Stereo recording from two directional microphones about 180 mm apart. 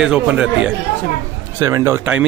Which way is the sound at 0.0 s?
5° right (ahead or behind).